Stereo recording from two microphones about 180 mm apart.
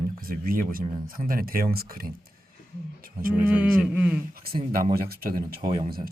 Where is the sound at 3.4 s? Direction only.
10° right (ahead or behind).